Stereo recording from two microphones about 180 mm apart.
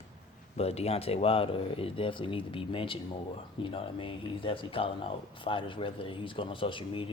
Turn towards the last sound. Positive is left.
turn(degrees=30)  # may be behind; listen again after turning